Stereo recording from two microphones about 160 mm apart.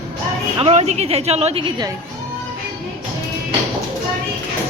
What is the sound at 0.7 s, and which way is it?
A woman's voice, 40° right (ahead or behind).